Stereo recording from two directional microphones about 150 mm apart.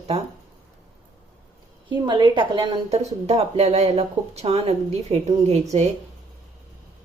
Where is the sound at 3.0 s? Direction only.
45° right (ahead or behind).